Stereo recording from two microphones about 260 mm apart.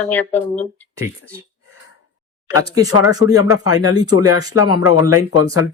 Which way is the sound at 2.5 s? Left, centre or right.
Centre.